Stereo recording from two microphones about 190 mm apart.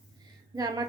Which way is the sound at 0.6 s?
20° right (ahead or behind).